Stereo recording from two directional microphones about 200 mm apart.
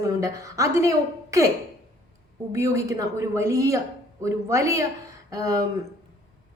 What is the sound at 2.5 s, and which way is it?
A woman's voice, 15° right (ahead or behind).